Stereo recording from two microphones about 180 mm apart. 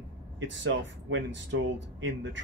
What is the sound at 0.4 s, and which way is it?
Speech, 90° right.